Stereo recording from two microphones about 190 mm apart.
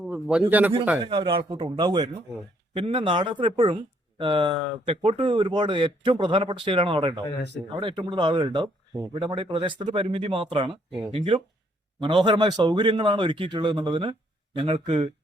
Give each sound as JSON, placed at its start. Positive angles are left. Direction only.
{"t": 0.0, "sound": "speech", "side_deg": -5}
{"t": 1.0, "sound": "speech", "side_deg": -25}